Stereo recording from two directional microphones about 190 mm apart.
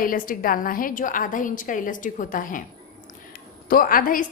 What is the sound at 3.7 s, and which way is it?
Speech, 50° left (ahead or behind).